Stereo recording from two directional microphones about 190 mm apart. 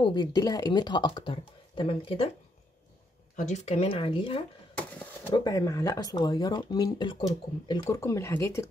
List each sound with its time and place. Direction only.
0.0 s speech: 20° left (ahead or behind)
3.3 s speech: 35° left (ahead or behind)
4.7 s a sound: 10° left (ahead or behind)
5.3 s speech: 20° left (ahead or behind)